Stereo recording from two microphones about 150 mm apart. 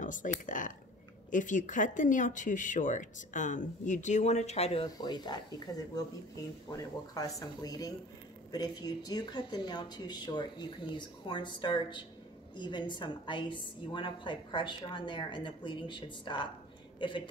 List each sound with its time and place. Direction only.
0.0 s speech: 60° left (ahead or behind); by 4.8 s 45° left (ahead or behind)
5.0 s speech: 30° left (ahead or behind)
7.2 s a woman's voice: 25° left (ahead or behind)